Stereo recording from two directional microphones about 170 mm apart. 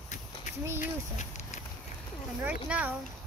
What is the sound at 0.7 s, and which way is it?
Speech, 45° left (ahead or behind).